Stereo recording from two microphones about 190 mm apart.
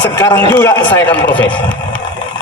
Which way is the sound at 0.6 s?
10° left (ahead or behind).